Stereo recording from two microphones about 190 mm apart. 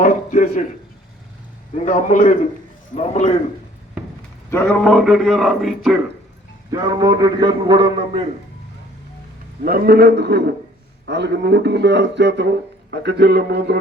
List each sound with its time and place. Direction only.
0.0 s a man's voice: 45° left (ahead or behind)
1.7 s a man's voice: 40° left (ahead or behind)
4.5 s speech: 5° left (ahead or behind)
6.7 s a man's voice: 20° right (ahead or behind)
9.6 s speech: 50° right (ahead or behind)